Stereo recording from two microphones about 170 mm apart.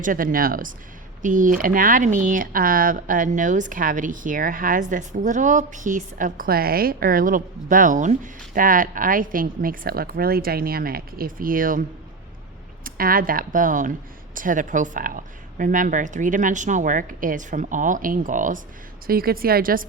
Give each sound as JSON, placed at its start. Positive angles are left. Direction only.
{"t": 0.0, "sound": "a woman's voice", "side_deg": -55}
{"t": 12.8, "sound": "a woman's voice", "side_deg": -55}
{"t": 19.0, "sound": "a woman's voice", "side_deg": -60}